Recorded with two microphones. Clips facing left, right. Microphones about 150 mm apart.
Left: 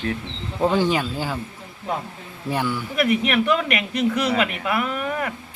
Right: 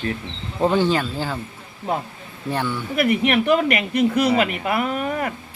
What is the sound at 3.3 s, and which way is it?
Speech, 30° right (ahead or behind).